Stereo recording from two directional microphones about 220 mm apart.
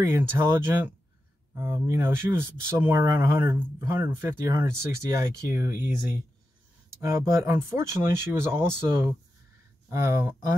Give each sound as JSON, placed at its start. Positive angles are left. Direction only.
{"t": 0.0, "sound": "speech", "side_deg": -10}
{"t": 7.0, "sound": "speech", "side_deg": -15}
{"t": 9.8, "sound": "speech", "side_deg": -10}